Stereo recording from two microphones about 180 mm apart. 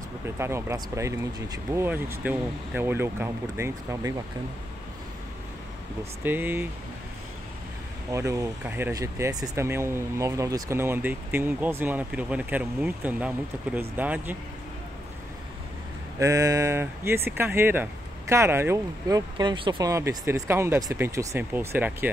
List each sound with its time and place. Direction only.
0.4 s speech: 15° right (ahead or behind)
6.2 s speech: 10° right (ahead or behind)
8.1 s speech: 15° right (ahead or behind)
16.2 s speech: 15° right (ahead or behind)
19.9 s speech: 15° right (ahead or behind)